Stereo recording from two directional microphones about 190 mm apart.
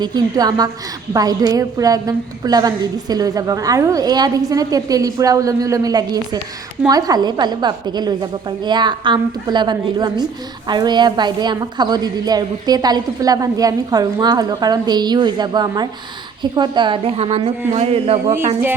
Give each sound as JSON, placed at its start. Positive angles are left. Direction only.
{"t": 0.0, "sound": "a woman's voice", "side_deg": -20}